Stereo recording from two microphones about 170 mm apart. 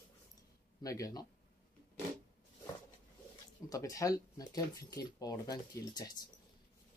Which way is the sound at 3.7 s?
20° left (ahead or behind).